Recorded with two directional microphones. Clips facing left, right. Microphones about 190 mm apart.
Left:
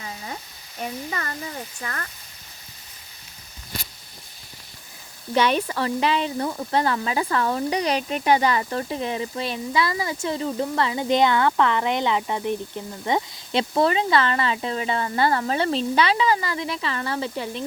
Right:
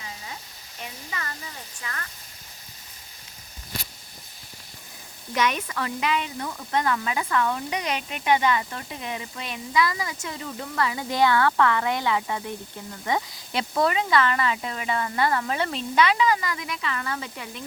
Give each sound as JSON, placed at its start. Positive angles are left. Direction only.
{"t": 0.8, "sound": "speech", "side_deg": 40}
{"t": 5.3, "sound": "speech", "side_deg": 30}